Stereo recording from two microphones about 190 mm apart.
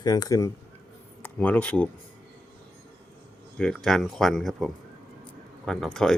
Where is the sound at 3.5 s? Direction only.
5° left (ahead or behind).